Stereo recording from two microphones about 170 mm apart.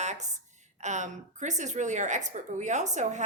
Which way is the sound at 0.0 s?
45° right (ahead or behind).